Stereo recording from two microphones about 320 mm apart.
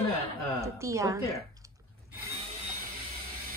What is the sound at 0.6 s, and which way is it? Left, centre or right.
Speech, centre.